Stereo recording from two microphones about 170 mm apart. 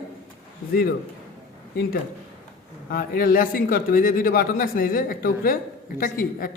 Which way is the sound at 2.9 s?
60° left (ahead or behind).